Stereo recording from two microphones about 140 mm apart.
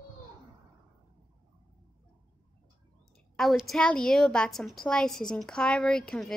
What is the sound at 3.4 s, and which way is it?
A woman's voice, centre (ahead or behind).